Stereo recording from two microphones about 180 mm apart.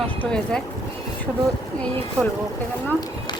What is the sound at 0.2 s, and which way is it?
Speech, 5° left (ahead or behind).